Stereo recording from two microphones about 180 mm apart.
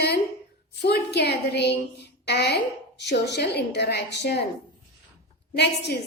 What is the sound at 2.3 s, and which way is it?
A woman's voice, 70° left (ahead or behind).